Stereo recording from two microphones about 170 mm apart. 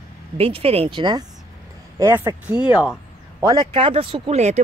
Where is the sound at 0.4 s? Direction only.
35° right (ahead or behind).